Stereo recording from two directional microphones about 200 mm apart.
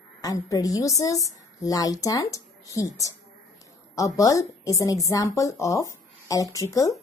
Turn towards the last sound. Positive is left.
turn(degrees=15)  # may be behind; listen again after turning